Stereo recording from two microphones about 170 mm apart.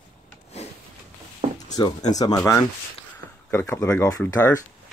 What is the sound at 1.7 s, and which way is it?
Speech, 25° left (ahead or behind).